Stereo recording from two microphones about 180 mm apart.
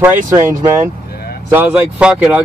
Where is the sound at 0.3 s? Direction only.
15° right (ahead or behind).